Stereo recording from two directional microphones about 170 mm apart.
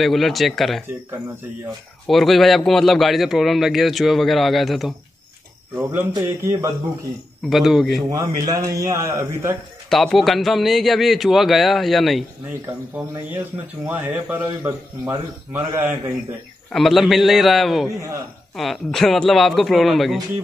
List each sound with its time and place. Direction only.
0.0 s a man's voice: centre (ahead or behind)
2.0 s a man's voice: centre (ahead or behind)
6.1 s a man's voice: 20° right (ahead or behind)
7.4 s a man's voice: centre (ahead or behind)
8.1 s a man's voice: 20° right (ahead or behind)
9.8 s a man's voice: centre (ahead or behind)
13.8 s a man's voice: 10° right (ahead or behind)
16.7 s a man's voice: centre (ahead or behind)